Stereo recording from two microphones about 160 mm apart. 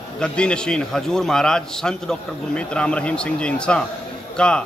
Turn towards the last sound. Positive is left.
turn(degrees=5)  # may be behind; listen again after turning